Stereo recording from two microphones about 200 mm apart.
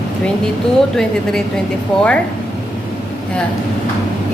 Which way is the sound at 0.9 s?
Centre (ahead or behind).